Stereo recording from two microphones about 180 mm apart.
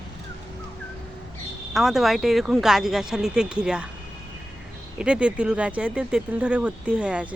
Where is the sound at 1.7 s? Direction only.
Centre (ahead or behind).